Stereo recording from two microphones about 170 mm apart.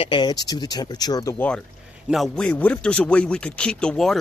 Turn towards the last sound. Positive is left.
turn(degrees=5)  # may be behind; listen again after turning